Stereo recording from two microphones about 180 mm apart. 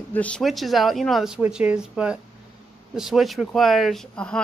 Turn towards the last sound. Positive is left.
turn(degrees=5)  # may be behind; listen again after turning